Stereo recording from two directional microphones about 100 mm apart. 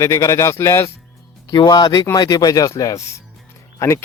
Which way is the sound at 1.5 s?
45° left (ahead or behind).